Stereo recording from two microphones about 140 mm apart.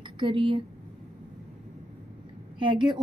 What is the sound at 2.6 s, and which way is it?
Speech, 35° right (ahead or behind).